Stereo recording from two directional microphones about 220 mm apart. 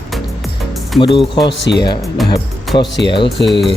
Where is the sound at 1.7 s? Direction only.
55° left (ahead or behind).